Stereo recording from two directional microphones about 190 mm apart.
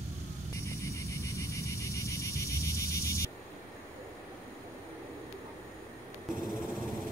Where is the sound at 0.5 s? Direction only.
15° left (ahead or behind).